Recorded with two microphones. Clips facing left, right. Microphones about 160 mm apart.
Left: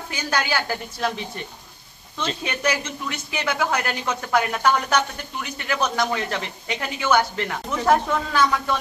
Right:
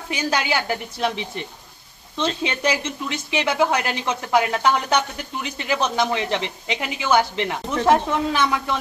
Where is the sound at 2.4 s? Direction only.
25° right (ahead or behind).